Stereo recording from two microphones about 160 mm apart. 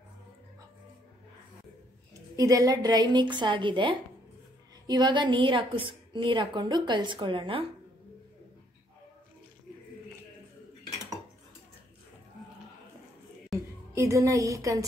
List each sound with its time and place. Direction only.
2.3 s a woman's voice: 20° right (ahead or behind)
13.5 s music: centre (ahead or behind)
13.9 s a woman's voice: 20° right (ahead or behind)